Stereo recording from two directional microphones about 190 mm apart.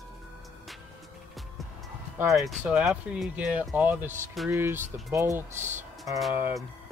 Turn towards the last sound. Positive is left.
turn(degrees=-5)  # may be behind; listen again after turning